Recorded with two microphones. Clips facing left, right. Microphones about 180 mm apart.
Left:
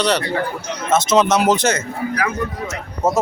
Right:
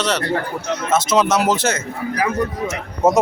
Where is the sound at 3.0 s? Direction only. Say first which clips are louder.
Right 3 dB; 20° right (ahead or behind).